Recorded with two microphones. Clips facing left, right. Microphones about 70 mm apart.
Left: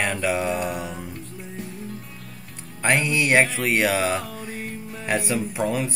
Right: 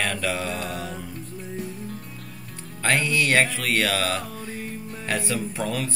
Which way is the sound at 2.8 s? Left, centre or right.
Centre.